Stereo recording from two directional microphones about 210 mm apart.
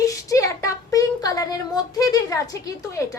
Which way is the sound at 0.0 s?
15° left (ahead or behind).